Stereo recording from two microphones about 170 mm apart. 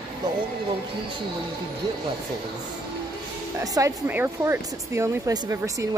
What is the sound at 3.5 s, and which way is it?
Speech, 20° right (ahead or behind).